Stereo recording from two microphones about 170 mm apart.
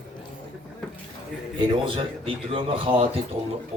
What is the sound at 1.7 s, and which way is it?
Speech, 30° right (ahead or behind).